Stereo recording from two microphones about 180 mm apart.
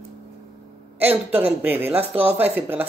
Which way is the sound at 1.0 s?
10° right (ahead or behind).